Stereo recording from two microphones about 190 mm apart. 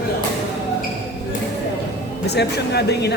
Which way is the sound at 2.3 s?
60° left (ahead or behind).